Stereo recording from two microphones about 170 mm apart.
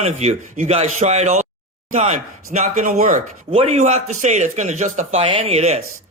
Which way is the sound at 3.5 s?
35° right (ahead or behind).